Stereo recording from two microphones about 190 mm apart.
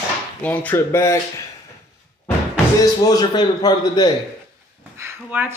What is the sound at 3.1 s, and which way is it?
A man's voice, 20° left (ahead or behind).